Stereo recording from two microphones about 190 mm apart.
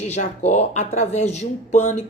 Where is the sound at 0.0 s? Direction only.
35° left (ahead or behind).